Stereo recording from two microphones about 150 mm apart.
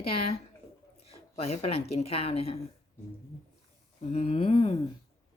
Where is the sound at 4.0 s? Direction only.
45° left (ahead or behind).